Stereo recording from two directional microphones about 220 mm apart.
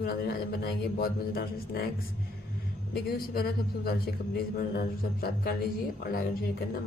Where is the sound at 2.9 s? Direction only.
45° left (ahead or behind).